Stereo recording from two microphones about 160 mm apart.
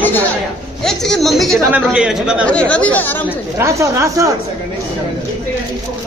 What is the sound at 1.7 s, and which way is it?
Speech, 5° right (ahead or behind).